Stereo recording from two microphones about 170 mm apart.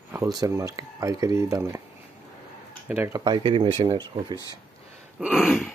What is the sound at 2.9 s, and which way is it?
Speech, 10° right (ahead or behind).